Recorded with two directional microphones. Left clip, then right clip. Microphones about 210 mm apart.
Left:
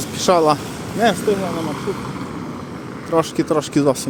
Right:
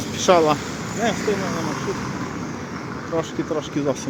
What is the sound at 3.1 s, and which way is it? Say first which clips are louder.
Speech: left 7 dB; 40° left (ahead or behind).